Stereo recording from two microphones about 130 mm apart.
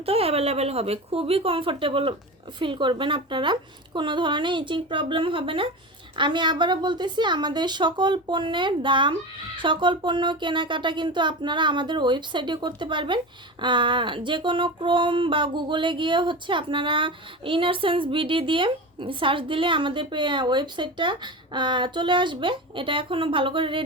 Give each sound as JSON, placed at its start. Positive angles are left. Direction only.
{"t": 0.0, "sound": "speech", "side_deg": -50}